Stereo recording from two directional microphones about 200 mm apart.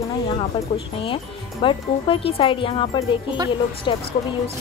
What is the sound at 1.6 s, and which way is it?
Speech, 25° left (ahead or behind).